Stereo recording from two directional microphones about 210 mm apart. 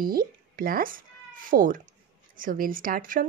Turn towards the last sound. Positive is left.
turn(degrees=-40)  # may be behind; listen again after turning